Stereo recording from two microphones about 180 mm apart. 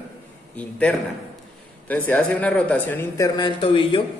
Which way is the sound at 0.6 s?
5° left (ahead or behind).